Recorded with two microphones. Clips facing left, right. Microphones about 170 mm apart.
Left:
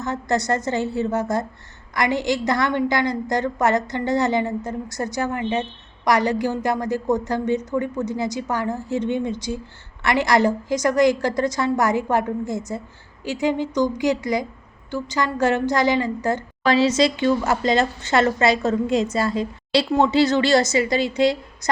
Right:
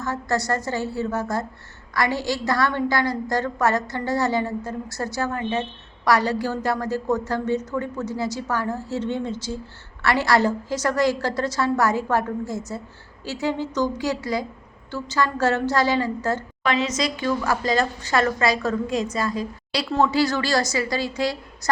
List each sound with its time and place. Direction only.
0.0 s a woman's voice: 20° left (ahead or behind)
16.6 s a woman's voice: 30° left (ahead or behind)